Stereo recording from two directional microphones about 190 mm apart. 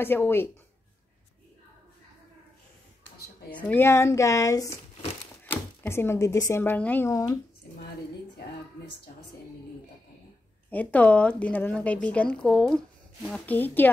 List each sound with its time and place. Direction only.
0.0 s speech: 10° left (ahead or behind)
3.4 s speech: 10° left (ahead or behind)
10.7 s speech: 10° left (ahead or behind)